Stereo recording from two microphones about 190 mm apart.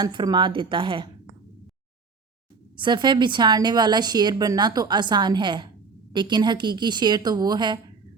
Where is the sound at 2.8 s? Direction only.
25° right (ahead or behind).